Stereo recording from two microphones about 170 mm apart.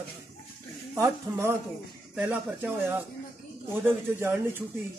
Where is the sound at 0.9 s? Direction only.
15° right (ahead or behind).